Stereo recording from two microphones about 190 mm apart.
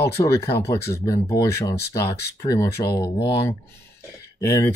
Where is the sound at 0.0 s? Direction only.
15° left (ahead or behind).